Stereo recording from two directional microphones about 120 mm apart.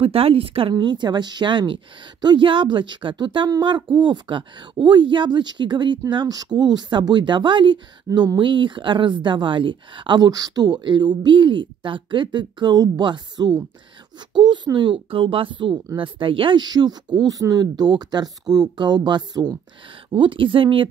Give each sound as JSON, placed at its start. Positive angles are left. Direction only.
{"t": 0.0, "sound": "speech", "side_deg": -55}